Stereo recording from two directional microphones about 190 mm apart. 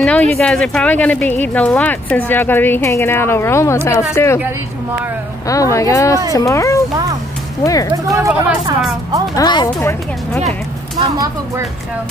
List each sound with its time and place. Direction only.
0.0 s speech: 5° left (ahead or behind)
5.5 s speech: 15° left (ahead or behind)
7.9 s speech: 15° right (ahead or behind)
9.3 s speech: 20° left (ahead or behind)
11.0 s speech: 20° right (ahead or behind)